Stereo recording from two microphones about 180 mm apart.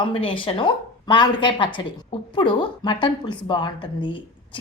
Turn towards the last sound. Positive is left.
turn(degrees=25)  # may be behind; listen again after turning